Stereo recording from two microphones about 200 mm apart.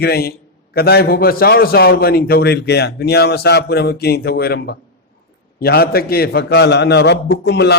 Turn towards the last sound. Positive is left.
turn(degrees=55)  # may be behind; listen again after turning